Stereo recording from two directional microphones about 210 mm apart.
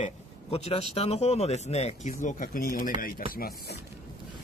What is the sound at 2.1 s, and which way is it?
Speech, 45° left (ahead or behind).